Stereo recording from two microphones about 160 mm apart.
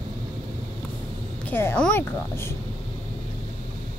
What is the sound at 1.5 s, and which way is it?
Speech, 15° left (ahead or behind).